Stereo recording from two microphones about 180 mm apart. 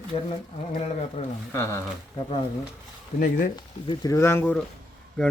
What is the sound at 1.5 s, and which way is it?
Speech, 15° left (ahead or behind).